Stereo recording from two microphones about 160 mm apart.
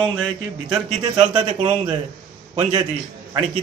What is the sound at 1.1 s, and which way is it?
Speech, 30° right (ahead or behind).